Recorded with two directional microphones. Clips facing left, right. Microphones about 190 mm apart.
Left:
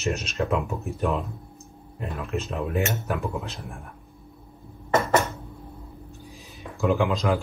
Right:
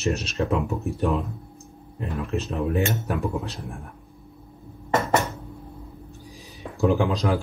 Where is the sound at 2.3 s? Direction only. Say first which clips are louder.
Right 2 dB; 35° right (ahead or behind).